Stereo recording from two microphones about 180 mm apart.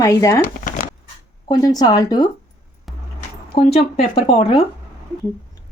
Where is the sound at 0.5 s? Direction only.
50° left (ahead or behind).